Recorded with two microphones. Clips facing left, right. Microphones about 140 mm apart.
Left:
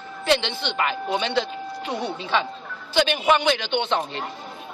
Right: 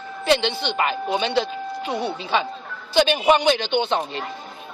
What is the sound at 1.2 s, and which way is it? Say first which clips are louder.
Speech: right 3 dB; 30° right (ahead or behind).